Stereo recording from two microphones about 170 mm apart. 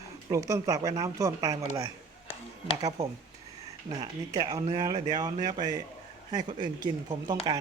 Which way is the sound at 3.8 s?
25° right (ahead or behind).